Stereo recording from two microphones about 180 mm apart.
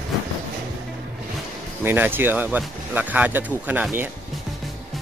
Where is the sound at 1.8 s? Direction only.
10° right (ahead or behind).